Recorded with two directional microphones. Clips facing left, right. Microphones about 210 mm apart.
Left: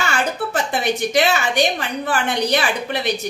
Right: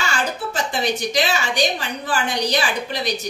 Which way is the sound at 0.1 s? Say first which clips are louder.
Left 3 dB; 60° left (ahead or behind).